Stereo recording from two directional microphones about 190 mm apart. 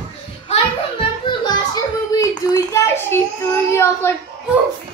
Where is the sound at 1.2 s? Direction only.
20° left (ahead or behind).